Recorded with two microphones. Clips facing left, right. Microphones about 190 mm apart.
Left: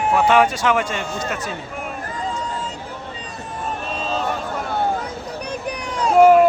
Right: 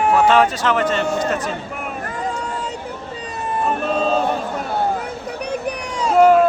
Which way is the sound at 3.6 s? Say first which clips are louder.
Right 7 dB; 50° right (ahead or behind).